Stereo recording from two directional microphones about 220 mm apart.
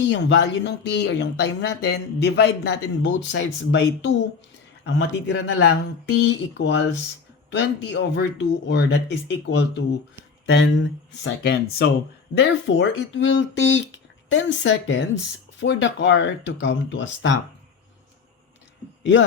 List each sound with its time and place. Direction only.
0.0 s speech: 55° left (ahead or behind)